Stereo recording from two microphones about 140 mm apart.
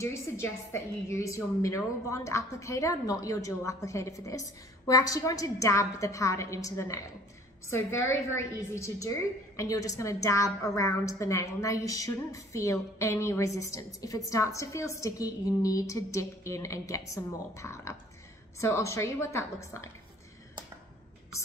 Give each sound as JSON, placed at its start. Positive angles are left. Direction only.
{"t": 0.0, "sound": "a woman's voice", "side_deg": 20}